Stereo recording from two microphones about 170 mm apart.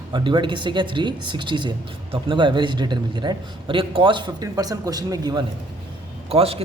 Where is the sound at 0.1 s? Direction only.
25° right (ahead or behind).